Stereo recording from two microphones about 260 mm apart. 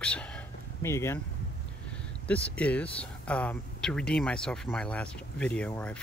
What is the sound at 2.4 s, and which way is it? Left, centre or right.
Speech, centre.